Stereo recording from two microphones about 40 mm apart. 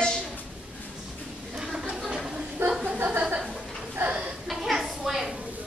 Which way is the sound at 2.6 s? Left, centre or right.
Right.